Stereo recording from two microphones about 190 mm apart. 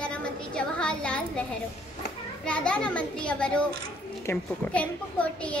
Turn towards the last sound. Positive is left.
turn(degrees=5)  # may be behind; listen again after turning